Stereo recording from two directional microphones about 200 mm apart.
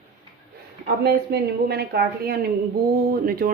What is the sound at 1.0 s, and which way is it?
Speech, 55° right (ahead or behind).